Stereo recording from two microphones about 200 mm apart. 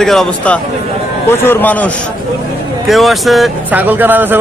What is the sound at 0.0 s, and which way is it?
A man's voice, centre (ahead or behind).